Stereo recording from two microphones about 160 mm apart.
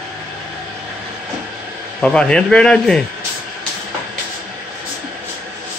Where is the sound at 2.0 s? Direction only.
5° left (ahead or behind).